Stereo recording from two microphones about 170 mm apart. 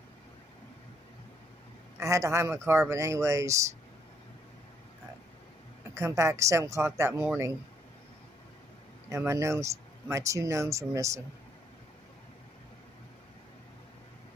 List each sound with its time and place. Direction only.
2.0 s speech: 15° right (ahead or behind)
5.9 s speech: 15° right (ahead or behind)
9.1 s speech: 15° right (ahead or behind)